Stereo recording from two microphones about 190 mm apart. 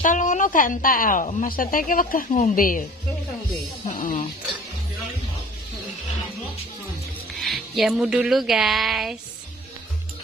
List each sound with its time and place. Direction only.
0.0 s a woman's voice: 40° left (ahead or behind)
3.8 s a woman's voice: 45° left (ahead or behind)
7.3 s speech: centre (ahead or behind)